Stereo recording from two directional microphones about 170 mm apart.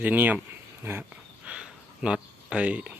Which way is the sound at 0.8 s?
15° right (ahead or behind).